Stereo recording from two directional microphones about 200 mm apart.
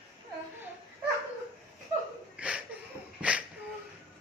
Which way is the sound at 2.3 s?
5° right (ahead or behind).